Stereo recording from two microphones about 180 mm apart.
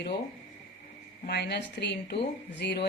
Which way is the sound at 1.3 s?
70° left (ahead or behind).